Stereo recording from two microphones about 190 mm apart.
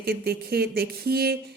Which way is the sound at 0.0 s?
55° right (ahead or behind).